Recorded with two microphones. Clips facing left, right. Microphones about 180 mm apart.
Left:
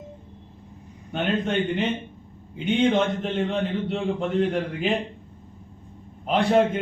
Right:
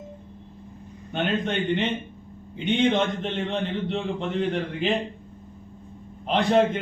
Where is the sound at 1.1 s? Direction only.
5° left (ahead or behind).